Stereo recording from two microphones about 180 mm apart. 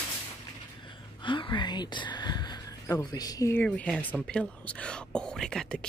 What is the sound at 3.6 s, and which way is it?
Speech, 5° left (ahead or behind).